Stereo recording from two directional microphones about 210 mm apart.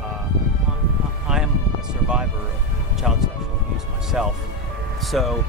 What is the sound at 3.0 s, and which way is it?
Speech, centre (ahead or behind).